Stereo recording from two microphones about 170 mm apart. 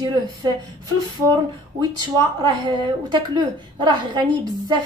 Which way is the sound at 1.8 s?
25° right (ahead or behind).